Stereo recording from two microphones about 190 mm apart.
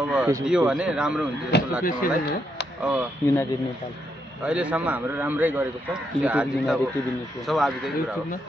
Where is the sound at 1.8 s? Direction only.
50° left (ahead or behind).